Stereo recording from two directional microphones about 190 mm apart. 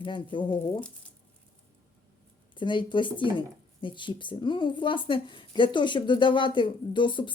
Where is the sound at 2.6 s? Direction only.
25° left (ahead or behind).